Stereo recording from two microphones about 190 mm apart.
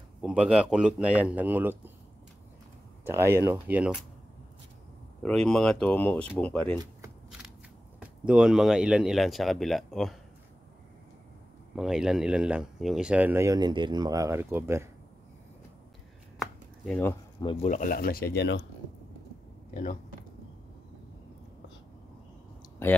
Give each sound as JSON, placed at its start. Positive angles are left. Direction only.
{"t": 0.2, "sound": "speech", "side_deg": -5}
{"t": 3.1, "sound": "speech", "side_deg": -15}
{"t": 5.2, "sound": "speech", "side_deg": 5}
{"t": 8.0, "sound": "speech", "side_deg": -5}
{"t": 11.7, "sound": "speech", "side_deg": -5}
{"t": 16.3, "sound": "a sound", "side_deg": 5}
{"t": 17.4, "sound": "speech", "side_deg": 30}
{"t": 19.7, "sound": "speech", "side_deg": 45}
{"t": 22.8, "sound": "speech", "side_deg": 10}